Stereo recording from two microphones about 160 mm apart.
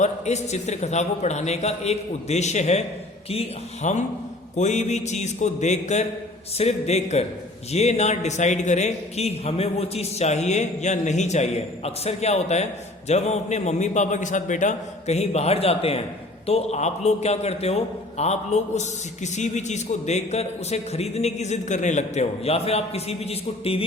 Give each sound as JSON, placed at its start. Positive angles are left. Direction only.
{"t": 0.0, "sound": "a man's voice", "side_deg": 45}
{"t": 3.8, "sound": "a man's voice", "side_deg": 45}